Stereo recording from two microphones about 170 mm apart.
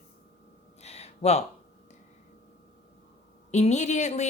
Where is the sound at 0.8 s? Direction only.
40° left (ahead or behind).